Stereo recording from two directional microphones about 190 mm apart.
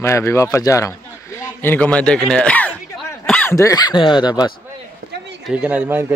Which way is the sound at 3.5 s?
15° left (ahead or behind).